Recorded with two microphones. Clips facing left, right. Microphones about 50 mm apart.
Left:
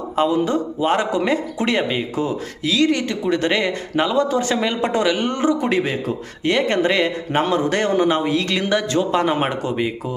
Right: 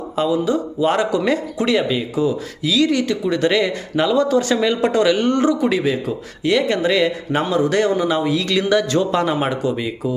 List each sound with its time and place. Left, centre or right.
0.2 s a man's voice: left
5.5 s a man's voice: left